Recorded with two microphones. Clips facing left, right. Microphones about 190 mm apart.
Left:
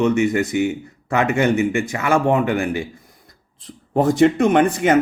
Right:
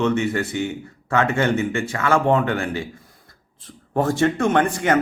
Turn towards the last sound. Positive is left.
turn(degrees=20)  # may be behind; listen again after turning